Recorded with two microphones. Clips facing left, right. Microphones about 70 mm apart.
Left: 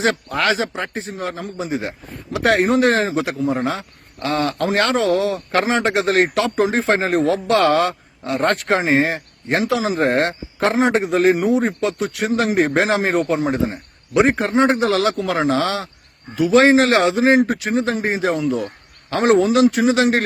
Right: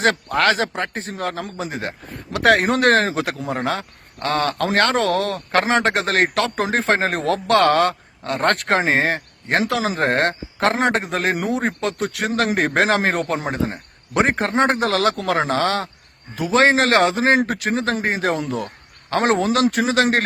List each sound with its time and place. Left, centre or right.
0.0 s a man's voice: right